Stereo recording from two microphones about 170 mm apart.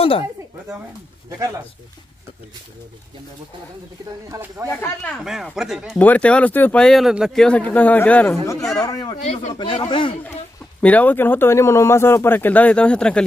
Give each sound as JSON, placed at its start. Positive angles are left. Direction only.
{"t": 0.0, "sound": "speech", "side_deg": 35}
{"t": 4.3, "sound": "speech", "side_deg": -15}
{"t": 4.6, "sound": "speech", "side_deg": 15}
{"t": 5.2, "sound": "speech", "side_deg": -5}
{"t": 5.9, "sound": "speech", "side_deg": 10}
{"t": 8.8, "sound": "speech", "side_deg": 20}
{"t": 9.1, "sound": "speech", "side_deg": 40}
{"t": 10.8, "sound": "speech", "side_deg": 10}